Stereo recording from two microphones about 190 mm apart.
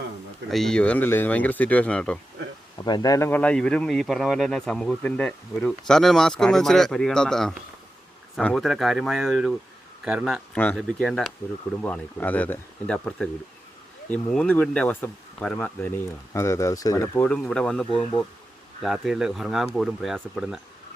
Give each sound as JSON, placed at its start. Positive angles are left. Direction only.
{"t": 0.5, "sound": "speech", "side_deg": 5}
{"t": 2.7, "sound": "a man's voice", "side_deg": 20}
{"t": 17.2, "sound": "a man's voice", "side_deg": 5}